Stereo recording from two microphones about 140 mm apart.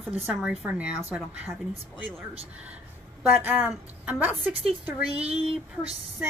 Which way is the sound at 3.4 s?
15° right (ahead or behind).